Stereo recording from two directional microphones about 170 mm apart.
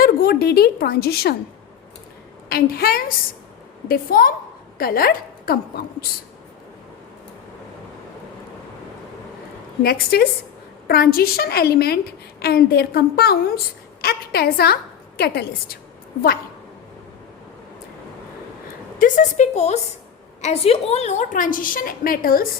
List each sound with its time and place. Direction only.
0.0 s a woman's voice: 65° left (ahead or behind)
2.5 s a woman's voice: 65° left (ahead or behind)
9.8 s a woman's voice: 65° left (ahead or behind)
18.9 s a woman's voice: 50° left (ahead or behind)